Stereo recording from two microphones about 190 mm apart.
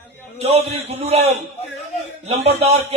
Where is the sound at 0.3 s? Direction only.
35° right (ahead or behind).